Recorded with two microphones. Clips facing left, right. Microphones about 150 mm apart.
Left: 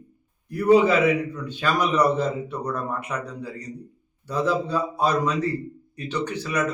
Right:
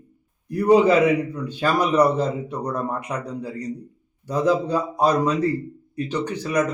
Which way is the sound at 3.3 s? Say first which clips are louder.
Right 5 dB; 10° right (ahead or behind).